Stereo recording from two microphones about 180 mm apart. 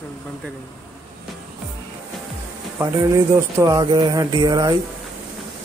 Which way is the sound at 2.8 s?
15° right (ahead or behind).